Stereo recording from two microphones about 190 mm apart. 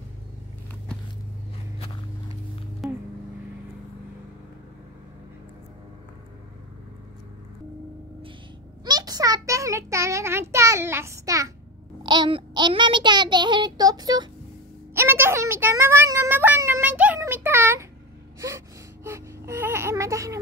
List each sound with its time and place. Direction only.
8.8 s child singing: 20° right (ahead or behind)
12.0 s a sound: 25° right (ahead or behind)
15.0 s child singing: 10° right (ahead or behind)
19.0 s wail: 15° right (ahead or behind)